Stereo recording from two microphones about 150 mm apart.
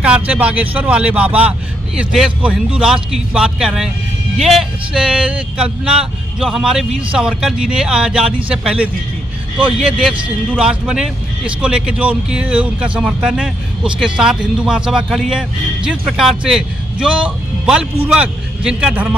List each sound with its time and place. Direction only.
0.0 s speech: 10° right (ahead or behind)
9.6 s speech: 35° right (ahead or behind)
9.8 s speech: 5° right (ahead or behind)